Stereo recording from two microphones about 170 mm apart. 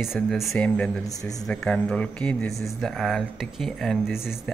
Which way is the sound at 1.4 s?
5° left (ahead or behind).